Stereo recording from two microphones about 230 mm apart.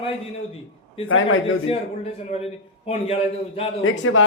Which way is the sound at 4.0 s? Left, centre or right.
Left.